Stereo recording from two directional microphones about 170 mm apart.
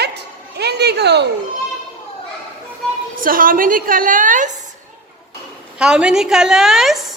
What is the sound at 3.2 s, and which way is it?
A woman's voice, 55° right (ahead or behind).